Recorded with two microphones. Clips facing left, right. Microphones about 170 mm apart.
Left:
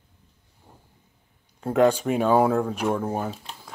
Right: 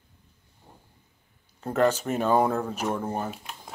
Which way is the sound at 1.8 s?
10° left (ahead or behind).